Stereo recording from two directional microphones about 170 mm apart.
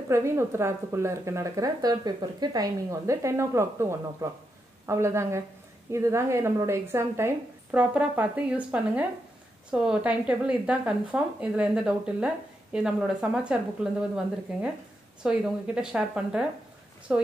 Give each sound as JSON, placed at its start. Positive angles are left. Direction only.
{"t": 0.1, "sound": "speech", "side_deg": -15}